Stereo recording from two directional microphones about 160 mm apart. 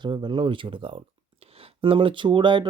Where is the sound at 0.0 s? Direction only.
30° right (ahead or behind).